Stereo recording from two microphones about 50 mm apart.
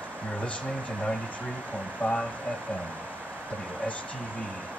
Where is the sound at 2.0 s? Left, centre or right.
Left.